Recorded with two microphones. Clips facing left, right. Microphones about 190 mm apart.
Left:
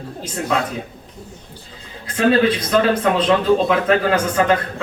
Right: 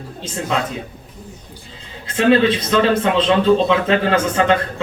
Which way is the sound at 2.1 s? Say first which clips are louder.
Right 1 dB; 25° right (ahead or behind).